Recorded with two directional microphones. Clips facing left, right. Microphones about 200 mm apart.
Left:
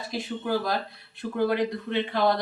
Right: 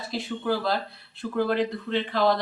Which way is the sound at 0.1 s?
15° left (ahead or behind).